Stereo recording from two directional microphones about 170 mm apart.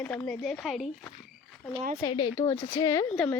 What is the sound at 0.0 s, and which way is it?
Speech, 10° left (ahead or behind).